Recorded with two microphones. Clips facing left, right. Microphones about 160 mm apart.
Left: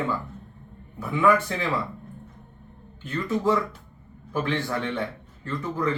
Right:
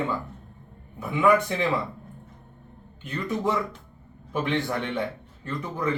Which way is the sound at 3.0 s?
20° right (ahead or behind).